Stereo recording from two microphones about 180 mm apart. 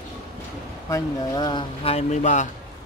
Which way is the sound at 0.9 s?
25° left (ahead or behind).